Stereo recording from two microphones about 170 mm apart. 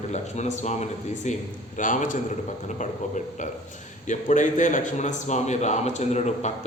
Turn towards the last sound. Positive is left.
turn(degrees=40)  # may be behind; listen again after turning